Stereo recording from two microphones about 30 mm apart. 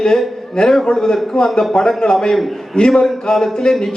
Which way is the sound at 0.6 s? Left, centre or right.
Left.